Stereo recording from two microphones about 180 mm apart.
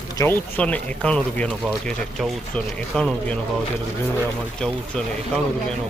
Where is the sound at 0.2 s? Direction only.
10° left (ahead or behind).